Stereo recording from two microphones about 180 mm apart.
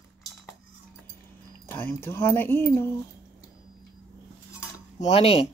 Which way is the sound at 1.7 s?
15° left (ahead or behind).